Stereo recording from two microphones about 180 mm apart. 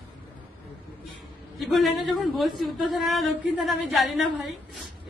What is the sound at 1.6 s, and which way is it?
A woman's voice, centre (ahead or behind).